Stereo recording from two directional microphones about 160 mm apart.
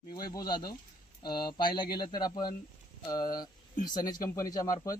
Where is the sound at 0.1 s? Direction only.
25° left (ahead or behind).